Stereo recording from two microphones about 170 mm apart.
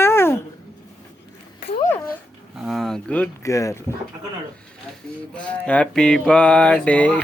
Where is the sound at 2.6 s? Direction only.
Centre (ahead or behind).